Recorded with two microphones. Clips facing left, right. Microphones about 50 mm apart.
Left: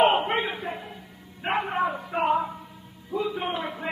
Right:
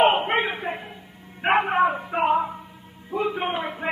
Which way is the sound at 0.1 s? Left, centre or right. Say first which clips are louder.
Right 2 dB; right.